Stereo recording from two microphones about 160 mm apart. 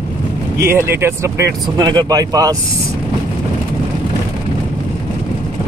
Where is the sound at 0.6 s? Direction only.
15° right (ahead or behind).